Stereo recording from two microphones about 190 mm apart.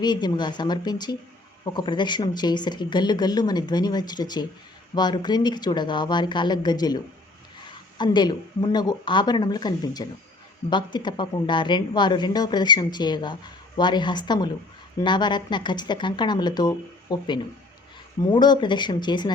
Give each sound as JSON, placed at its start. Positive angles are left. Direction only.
{"t": 0.0, "sound": "a woman's voice", "side_deg": 20}